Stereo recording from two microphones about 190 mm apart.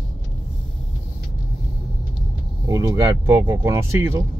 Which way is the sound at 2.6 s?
15° right (ahead or behind).